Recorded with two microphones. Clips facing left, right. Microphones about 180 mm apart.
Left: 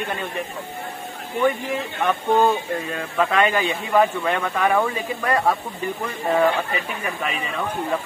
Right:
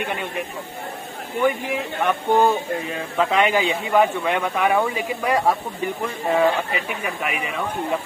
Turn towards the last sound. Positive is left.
turn(degrees=-5)  # may be behind; listen again after turning